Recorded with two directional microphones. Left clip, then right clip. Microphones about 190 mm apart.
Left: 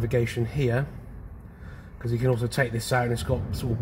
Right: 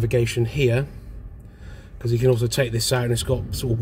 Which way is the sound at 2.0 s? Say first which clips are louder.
Right 6 dB; 15° right (ahead or behind).